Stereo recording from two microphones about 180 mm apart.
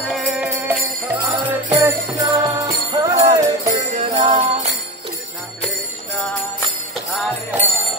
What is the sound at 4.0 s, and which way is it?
Jingle bell, 40° right (ahead or behind).